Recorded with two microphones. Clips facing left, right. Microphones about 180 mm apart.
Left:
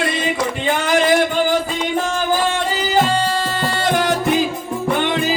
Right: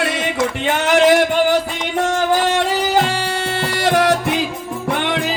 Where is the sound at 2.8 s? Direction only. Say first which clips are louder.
Left 1 dB; 75° right (ahead or behind).